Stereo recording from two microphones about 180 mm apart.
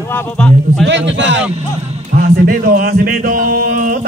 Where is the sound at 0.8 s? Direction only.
80° right.